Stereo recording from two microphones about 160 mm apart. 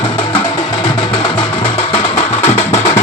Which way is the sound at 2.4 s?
40° left (ahead or behind).